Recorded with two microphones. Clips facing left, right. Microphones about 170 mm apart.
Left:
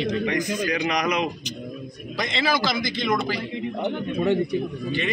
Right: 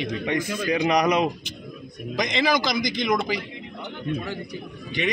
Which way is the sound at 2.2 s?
15° right (ahead or behind).